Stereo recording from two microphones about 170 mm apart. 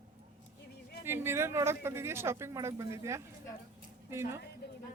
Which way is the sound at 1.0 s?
15° right (ahead or behind).